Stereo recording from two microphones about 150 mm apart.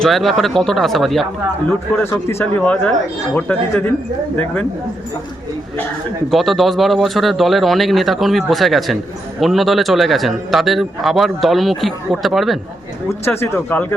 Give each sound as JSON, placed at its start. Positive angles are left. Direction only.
{"t": 0.0, "sound": "a man's voice", "side_deg": 0}
{"t": 2.0, "sound": "speech", "side_deg": 20}
{"t": 2.6, "sound": "speech", "side_deg": 5}
{"t": 6.3, "sound": "a man's voice", "side_deg": 0}
{"t": 13.1, "sound": "speech", "side_deg": 15}